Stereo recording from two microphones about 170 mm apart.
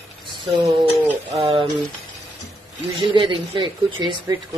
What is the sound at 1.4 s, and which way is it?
Speech, 30° right (ahead or behind).